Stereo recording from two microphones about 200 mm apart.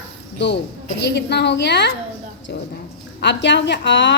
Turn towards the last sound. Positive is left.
turn(degrees=65)  # may be behind; listen again after turning